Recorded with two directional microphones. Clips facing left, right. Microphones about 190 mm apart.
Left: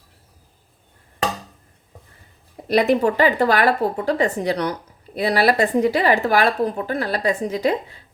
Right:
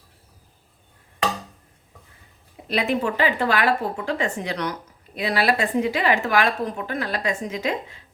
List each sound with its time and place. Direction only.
2.6 s a woman's voice: 40° left (ahead or behind)